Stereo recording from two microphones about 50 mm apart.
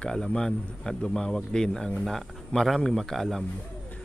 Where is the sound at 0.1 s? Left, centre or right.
Centre.